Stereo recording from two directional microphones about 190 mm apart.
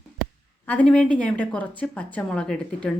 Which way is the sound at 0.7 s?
5° left (ahead or behind).